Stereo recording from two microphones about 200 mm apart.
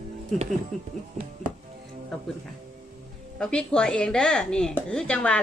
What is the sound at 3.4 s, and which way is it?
A woman's voice, 5° left (ahead or behind).